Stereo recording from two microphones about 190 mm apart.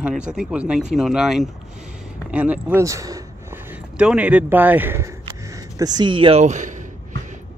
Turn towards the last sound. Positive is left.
turn(degrees=-40)  # may be behind; listen again after turning